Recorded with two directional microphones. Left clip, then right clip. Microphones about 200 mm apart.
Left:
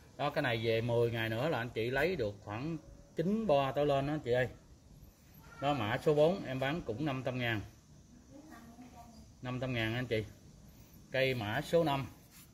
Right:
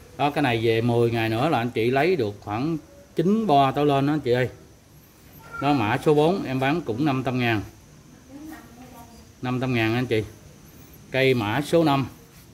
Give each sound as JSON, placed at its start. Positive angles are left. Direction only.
{"t": 0.2, "sound": "speech", "side_deg": -5}
{"t": 5.6, "sound": "speech", "side_deg": -15}
{"t": 9.4, "sound": "speech", "side_deg": -15}